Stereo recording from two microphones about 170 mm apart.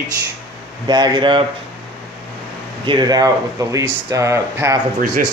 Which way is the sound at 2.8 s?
25° right (ahead or behind).